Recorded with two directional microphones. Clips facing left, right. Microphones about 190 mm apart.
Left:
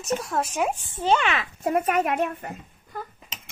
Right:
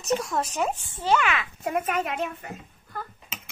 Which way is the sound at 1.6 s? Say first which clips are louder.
Left 5 dB; 45° left (ahead or behind).